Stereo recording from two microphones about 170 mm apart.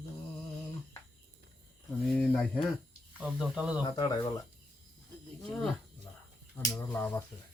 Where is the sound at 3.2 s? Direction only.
5° right (ahead or behind).